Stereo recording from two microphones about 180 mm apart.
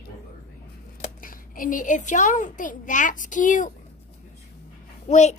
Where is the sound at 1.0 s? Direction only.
50° left (ahead or behind).